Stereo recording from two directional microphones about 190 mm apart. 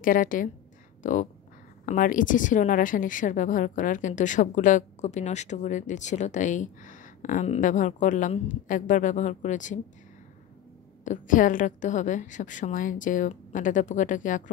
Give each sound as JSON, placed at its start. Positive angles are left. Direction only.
{"t": 0.0, "sound": "a woman's voice", "side_deg": 45}
{"t": 11.1, "sound": "a woman's voice", "side_deg": 45}